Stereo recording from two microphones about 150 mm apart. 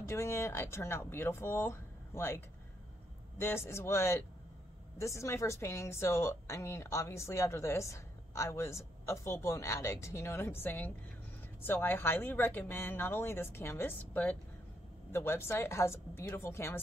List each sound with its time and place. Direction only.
0.0 s a woman's voice: 20° left (ahead or behind)